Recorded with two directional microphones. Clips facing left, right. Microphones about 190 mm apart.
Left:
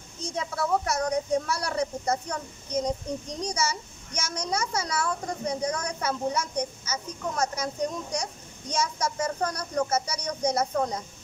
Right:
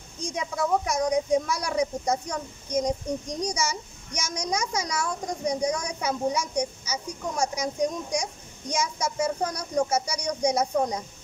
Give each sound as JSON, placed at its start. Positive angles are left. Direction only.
{"t": 0.2, "sound": "speech", "side_deg": -15}